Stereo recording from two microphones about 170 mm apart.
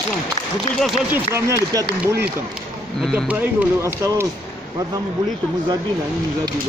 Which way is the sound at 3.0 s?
Centre (ahead or behind).